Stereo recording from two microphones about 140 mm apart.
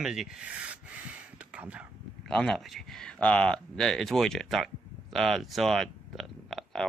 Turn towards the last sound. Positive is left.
turn(degrees=0)  # may be behind; listen again after turning